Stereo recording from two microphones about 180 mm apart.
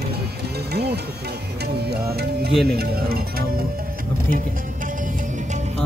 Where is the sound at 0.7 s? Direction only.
65° right (ahead or behind).